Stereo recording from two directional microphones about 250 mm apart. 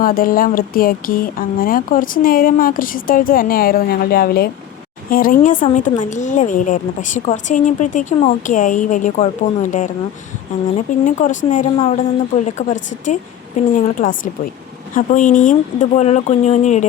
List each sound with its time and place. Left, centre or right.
0.0 s a woman's voice: left